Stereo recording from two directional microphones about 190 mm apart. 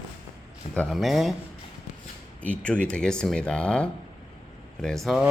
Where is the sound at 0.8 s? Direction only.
Centre (ahead or behind).